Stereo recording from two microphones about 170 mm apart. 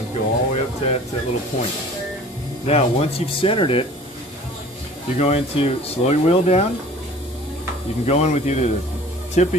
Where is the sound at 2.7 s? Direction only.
35° left (ahead or behind).